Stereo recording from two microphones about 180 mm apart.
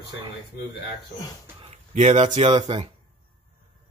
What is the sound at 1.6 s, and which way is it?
Speech, 40° right (ahead or behind).